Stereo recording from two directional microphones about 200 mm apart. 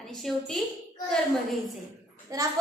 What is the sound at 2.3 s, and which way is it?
Speech, 15° right (ahead or behind).